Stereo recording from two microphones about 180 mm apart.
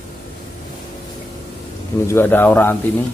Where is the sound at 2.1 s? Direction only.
10° left (ahead or behind).